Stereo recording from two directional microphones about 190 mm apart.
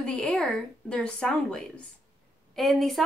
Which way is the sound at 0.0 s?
5° left (ahead or behind).